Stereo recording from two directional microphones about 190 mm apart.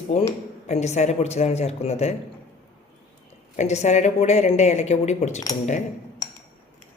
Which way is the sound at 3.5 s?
35° left (ahead or behind).